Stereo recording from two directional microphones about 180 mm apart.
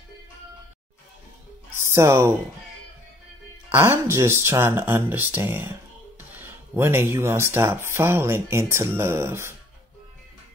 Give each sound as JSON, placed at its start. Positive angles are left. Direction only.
{"t": 2.0, "sound": "speech", "side_deg": -15}
{"t": 3.7, "sound": "speech", "side_deg": -15}